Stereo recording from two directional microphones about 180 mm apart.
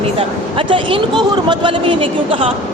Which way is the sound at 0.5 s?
30° right (ahead or behind).